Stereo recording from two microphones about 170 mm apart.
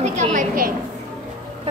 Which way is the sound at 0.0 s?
45° right (ahead or behind).